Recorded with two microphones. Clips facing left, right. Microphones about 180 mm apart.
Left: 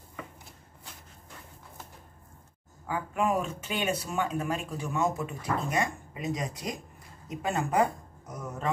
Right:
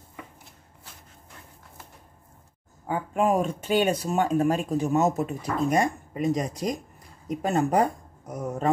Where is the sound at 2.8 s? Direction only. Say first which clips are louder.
Right 5 dB; 30° right (ahead or behind).